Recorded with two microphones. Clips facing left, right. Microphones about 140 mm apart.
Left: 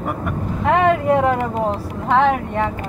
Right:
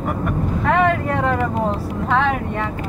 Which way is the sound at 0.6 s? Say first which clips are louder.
Left 3 dB; 15° left (ahead or behind).